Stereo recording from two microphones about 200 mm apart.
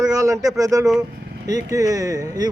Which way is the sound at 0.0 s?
15° right (ahead or behind).